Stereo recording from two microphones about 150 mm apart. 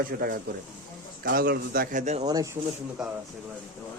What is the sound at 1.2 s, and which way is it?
Speech, 90° right.